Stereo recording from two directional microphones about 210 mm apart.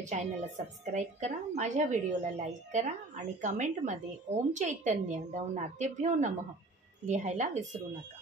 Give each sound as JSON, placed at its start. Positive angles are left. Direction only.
{"t": 0.0, "sound": "a woman's voice", "side_deg": -35}